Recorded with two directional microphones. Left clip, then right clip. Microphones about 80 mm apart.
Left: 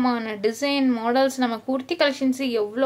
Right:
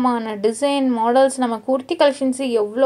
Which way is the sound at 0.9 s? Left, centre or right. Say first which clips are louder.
Right 5 dB; centre.